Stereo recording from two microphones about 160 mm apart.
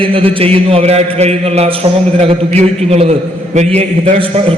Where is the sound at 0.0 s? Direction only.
35° right (ahead or behind).